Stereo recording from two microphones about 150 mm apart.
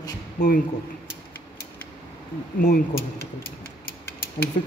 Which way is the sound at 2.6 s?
70° left (ahead or behind).